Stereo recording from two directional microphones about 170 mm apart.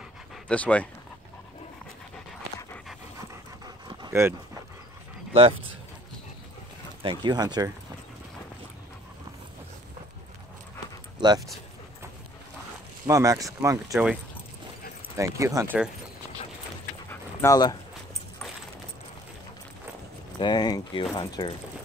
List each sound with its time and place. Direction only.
0.5 s speech: 10° left (ahead or behind)
3.2 s dog: 25° right (ahead or behind)
4.1 s speech: 15° right (ahead or behind)
5.3 s speech: 30° right (ahead or behind)
7.0 s speech: 30° right (ahead or behind)
11.1 s speech: 25° right (ahead or behind)
13.0 s speech: 20° right (ahead or behind)
15.1 s speech: 15° right (ahead or behind)
17.1 s dog: 15° left (ahead or behind)
20.3 s speech: 25° left (ahead or behind)